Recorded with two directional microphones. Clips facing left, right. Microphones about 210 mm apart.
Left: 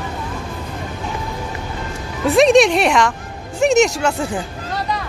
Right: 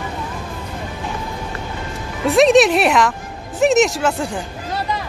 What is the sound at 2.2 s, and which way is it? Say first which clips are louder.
Speech: even; centre (ahead or behind).